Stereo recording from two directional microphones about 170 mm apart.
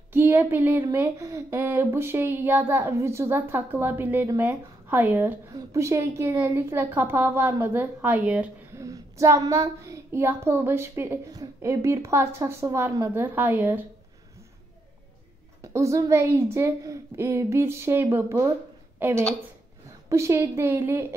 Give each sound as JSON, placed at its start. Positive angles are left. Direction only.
{"t": 0.1, "sound": "speech", "side_deg": -10}
{"t": 15.6, "sound": "speech", "side_deg": -20}